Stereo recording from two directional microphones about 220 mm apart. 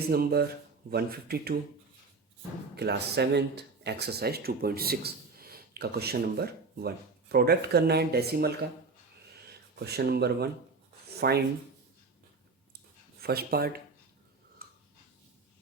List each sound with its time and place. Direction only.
0.1 s speech: 45° right (ahead or behind)
2.7 s speech: 50° right (ahead or behind)
13.2 s speech: 45° right (ahead or behind)
14.6 s a sound: 45° right (ahead or behind)